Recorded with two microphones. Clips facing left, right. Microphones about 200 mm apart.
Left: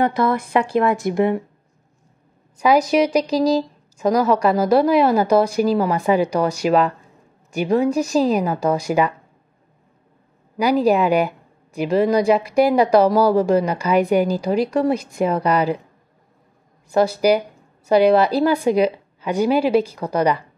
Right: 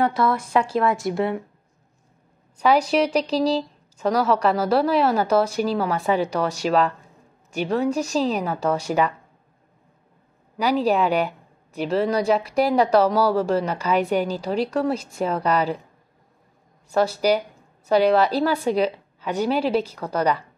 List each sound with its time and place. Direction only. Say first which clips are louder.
0.5 s a woman's voice: left 3 dB; 15° left (ahead or behind)
2.9 s a woman's voice: left 3 dB; 10° left (ahead or behind)
10.8 s a woman's voice: left 4 dB; 10° left (ahead or behind)
17.0 s a woman's voice: left 4 dB; 10° left (ahead or behind)